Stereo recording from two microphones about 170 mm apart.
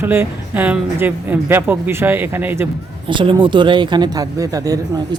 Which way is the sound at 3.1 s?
30° right (ahead or behind).